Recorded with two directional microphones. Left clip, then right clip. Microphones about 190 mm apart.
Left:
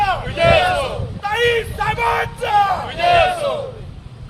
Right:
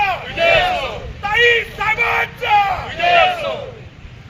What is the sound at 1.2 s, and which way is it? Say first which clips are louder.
Vehicle: right 4 dB; 10° left (ahead or behind).